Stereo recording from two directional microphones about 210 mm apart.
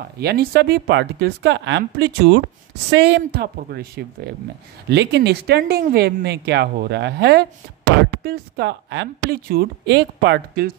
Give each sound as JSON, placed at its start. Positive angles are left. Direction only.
{"t": 0.2, "sound": "speech", "side_deg": -50}